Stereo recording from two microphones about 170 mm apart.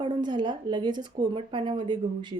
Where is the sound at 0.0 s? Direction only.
25° right (ahead or behind).